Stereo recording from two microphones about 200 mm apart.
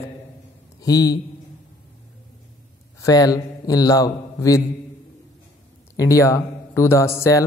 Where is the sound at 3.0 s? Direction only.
20° left (ahead or behind).